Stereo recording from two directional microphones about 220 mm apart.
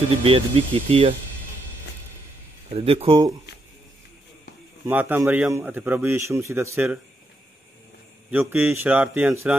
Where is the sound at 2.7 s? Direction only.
25° right (ahead or behind).